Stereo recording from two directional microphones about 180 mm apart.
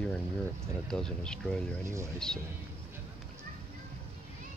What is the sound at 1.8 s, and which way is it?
Speech, 15° right (ahead or behind).